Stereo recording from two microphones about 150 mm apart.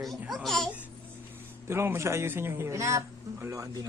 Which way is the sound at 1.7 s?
15° right (ahead or behind).